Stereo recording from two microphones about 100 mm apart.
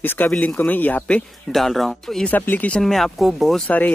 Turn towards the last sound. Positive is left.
turn(degrees=15)  # may be behind; listen again after turning